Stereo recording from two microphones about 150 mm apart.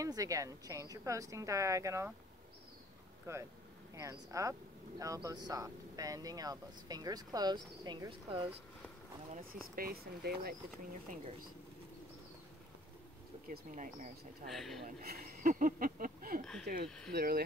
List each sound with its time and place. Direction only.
0.0 s speech: 20° right (ahead or behind)
3.3 s speech: 20° right (ahead or behind); by 8.5 s 35° right (ahead or behind)
9.3 s speech: 70° right (ahead or behind)
9.8 s speech: 90° right
13.5 s speech: 60° right (ahead or behind)
14.5 s speech: centre (ahead or behind)
15.0 s speech: 90° right; by 16.9 s 70° right (ahead or behind)
17.1 s speech: 90° right